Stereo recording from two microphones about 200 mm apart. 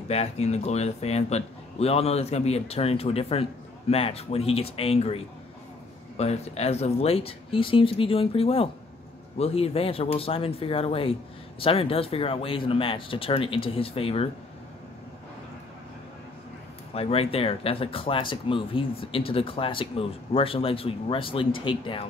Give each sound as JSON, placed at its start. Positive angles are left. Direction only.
{"t": 0.1, "sound": "a man's voice", "side_deg": 30}
{"t": 16.9, "sound": "speech", "side_deg": 30}